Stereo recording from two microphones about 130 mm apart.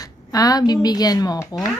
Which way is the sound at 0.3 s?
30° left (ahead or behind).